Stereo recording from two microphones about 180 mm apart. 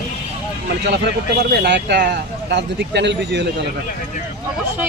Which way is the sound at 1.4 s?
70° right (ahead or behind).